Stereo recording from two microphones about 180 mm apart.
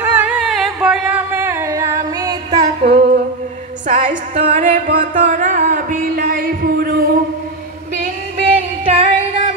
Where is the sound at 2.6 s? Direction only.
35° right (ahead or behind); by 7.0 s 55° right (ahead or behind).